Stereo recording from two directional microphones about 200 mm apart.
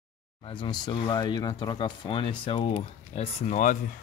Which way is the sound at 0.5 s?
20° left (ahead or behind).